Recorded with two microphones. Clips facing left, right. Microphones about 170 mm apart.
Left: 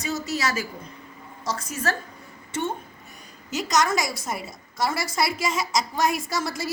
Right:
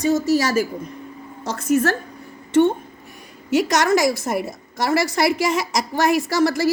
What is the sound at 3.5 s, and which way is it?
A woman's voice, 65° right (ahead or behind).